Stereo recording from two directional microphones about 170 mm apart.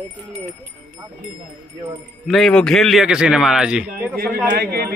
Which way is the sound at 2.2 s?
Centre (ahead or behind).